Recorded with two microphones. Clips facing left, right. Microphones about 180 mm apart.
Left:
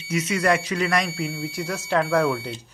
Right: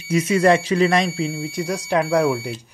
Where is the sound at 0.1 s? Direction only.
30° right (ahead or behind).